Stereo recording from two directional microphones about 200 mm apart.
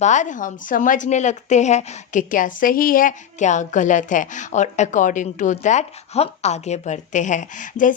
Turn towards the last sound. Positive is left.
turn(degrees=40)  # may be behind; listen again after turning